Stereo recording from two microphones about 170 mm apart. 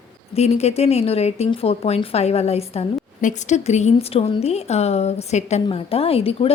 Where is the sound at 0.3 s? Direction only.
40° left (ahead or behind).